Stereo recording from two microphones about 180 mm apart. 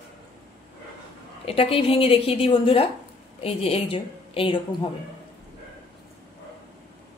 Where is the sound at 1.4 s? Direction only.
30° left (ahead or behind).